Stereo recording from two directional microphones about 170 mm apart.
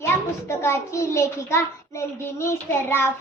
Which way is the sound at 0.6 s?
15° left (ahead or behind).